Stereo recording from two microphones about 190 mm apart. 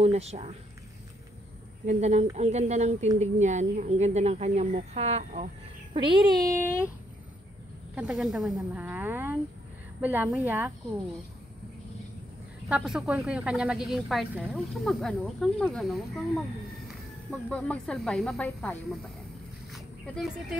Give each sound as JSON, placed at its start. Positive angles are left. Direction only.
{"t": 0.0, "sound": "speech", "side_deg": -35}
{"t": 1.9, "sound": "speech", "side_deg": -35}
{"t": 5.9, "sound": "a child's voice", "side_deg": -20}
{"t": 7.9, "sound": "speech", "side_deg": -5}
{"t": 12.6, "sound": "speech", "side_deg": -5}